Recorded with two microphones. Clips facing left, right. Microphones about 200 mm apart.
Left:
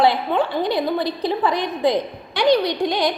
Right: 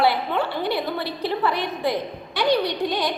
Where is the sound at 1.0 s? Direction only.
15° left (ahead or behind).